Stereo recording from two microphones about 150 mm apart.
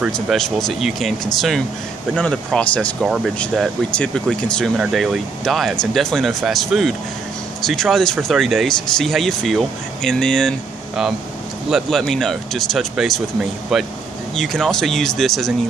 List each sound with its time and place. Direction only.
0.0 s speech: centre (ahead or behind)
2.1 s speech: 5° left (ahead or behind)
11.7 s speech: centre (ahead or behind)
14.3 s speech: centre (ahead or behind)